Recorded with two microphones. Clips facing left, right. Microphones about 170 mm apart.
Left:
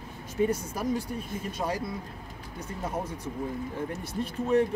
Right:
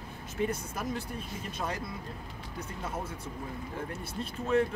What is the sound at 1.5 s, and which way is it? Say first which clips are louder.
Speech: left 4 dB; 10° left (ahead or behind).